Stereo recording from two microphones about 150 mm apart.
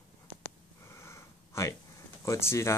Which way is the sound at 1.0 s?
20° left (ahead or behind).